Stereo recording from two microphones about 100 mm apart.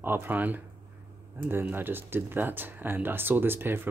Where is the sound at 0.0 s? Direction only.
20° right (ahead or behind).